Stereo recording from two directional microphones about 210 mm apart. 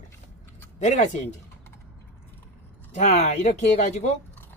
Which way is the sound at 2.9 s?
35° left (ahead or behind).